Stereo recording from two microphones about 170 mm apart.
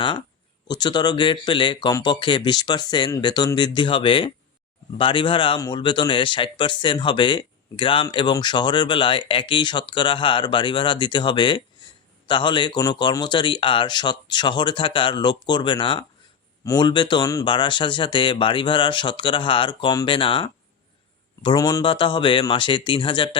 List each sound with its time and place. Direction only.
0.0 s speech: 30° left (ahead or behind)